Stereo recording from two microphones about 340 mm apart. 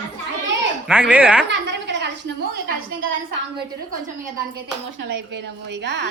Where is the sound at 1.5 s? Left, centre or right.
Right.